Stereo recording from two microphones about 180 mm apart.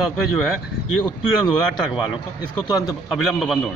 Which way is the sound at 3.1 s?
Centre (ahead or behind).